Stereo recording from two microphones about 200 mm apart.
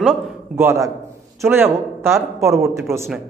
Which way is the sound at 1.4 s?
10° right (ahead or behind).